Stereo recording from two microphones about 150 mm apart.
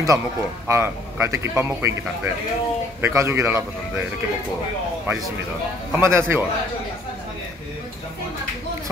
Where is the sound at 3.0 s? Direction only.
15° right (ahead or behind).